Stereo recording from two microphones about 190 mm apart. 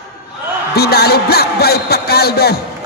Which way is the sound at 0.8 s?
55° left (ahead or behind).